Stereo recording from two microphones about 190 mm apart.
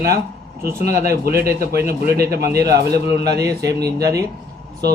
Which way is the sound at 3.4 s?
15° right (ahead or behind).